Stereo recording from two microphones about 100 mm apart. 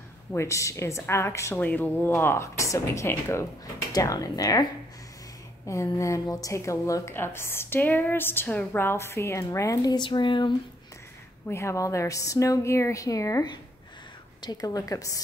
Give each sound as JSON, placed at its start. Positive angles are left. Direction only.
{"t": 0.3, "sound": "speech", "side_deg": 30}
{"t": 1.6, "sound": "speech", "side_deg": 15}
{"t": 5.7, "sound": "speech", "side_deg": 30}
{"t": 10.0, "sound": "a sound", "side_deg": 55}
{"t": 11.4, "sound": "speech", "side_deg": 25}